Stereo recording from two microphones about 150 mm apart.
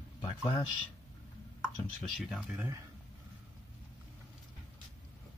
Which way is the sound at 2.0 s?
Centre (ahead or behind).